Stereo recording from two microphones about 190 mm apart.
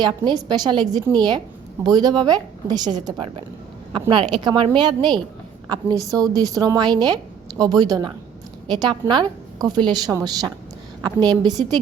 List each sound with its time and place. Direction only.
0.0 s a woman's voice: 20° right (ahead or behind)